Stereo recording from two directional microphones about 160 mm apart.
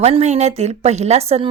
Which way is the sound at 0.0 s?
45° right (ahead or behind).